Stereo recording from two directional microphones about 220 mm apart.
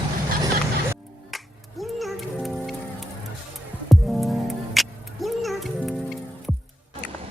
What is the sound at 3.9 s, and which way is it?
Music, centre (ahead or behind).